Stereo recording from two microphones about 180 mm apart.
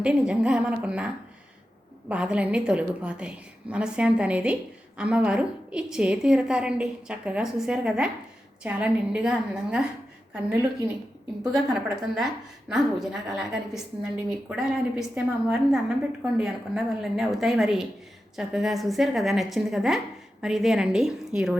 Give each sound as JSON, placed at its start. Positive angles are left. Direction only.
{"t": 0.0, "sound": "a woman's voice", "side_deg": -5}
{"t": 11.5, "sound": "a woman's voice", "side_deg": 0}